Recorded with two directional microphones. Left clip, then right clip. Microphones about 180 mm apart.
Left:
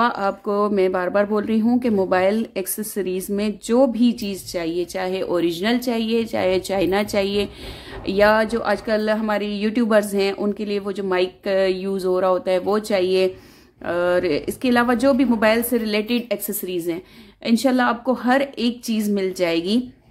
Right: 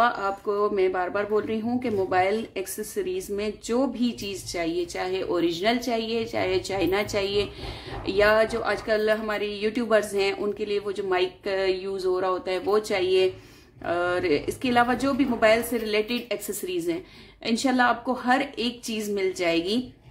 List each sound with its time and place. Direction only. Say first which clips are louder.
0.0 s a woman's voice: left 3 dB; 45° left (ahead or behind)